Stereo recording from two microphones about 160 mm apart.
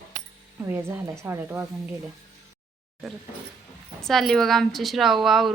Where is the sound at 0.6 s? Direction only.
15° right (ahead or behind).